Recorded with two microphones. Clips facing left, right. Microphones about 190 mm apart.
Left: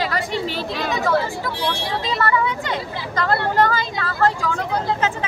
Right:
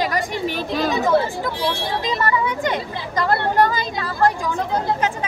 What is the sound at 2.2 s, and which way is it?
Speech, 15° right (ahead or behind).